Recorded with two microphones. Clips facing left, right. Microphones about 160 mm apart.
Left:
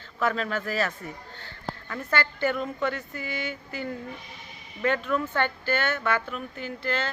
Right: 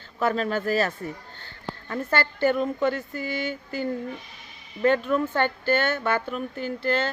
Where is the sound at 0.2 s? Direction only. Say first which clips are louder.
Right 3 dB; 30° right (ahead or behind).